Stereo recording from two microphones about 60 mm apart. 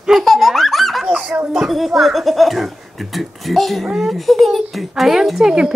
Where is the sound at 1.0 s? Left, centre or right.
Centre.